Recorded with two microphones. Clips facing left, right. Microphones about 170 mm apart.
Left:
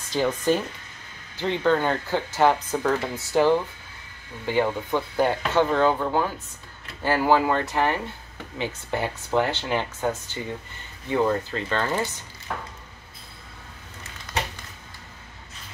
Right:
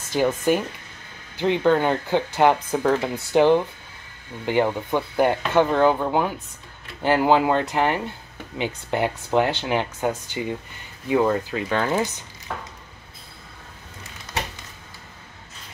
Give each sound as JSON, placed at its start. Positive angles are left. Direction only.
{"t": 0.1, "sound": "speech", "side_deg": -15}